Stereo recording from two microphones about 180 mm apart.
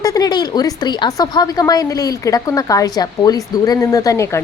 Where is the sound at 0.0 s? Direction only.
20° left (ahead or behind).